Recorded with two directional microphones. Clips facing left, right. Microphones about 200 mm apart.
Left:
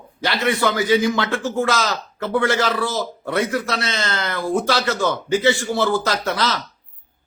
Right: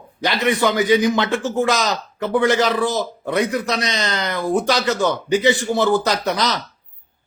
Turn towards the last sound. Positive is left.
turn(degrees=-15)  # may be behind; listen again after turning